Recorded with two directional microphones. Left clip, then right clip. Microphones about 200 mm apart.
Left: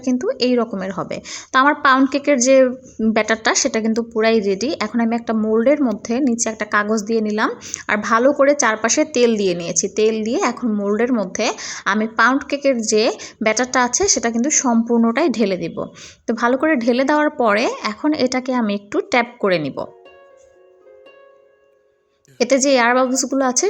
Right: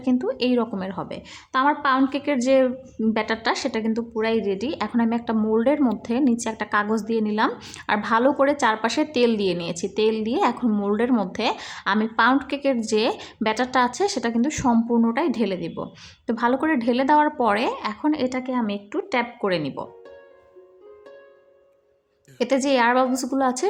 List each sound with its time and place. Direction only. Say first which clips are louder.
0.0 s a woman's voice: left 4 dB; 10° left (ahead or behind)
22.4 s a woman's voice: left 5 dB; 15° left (ahead or behind)